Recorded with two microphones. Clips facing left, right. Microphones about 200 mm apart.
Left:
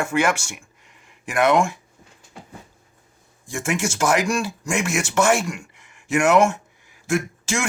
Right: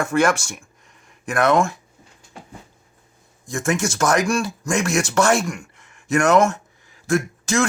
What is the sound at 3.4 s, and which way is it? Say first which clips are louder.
Speech: right 2 dB; 10° left (ahead or behind).